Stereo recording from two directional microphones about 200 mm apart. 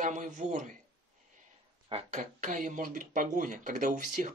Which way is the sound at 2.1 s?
40° right (ahead or behind).